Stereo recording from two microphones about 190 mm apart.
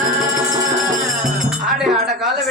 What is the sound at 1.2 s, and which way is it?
Speech, centre (ahead or behind).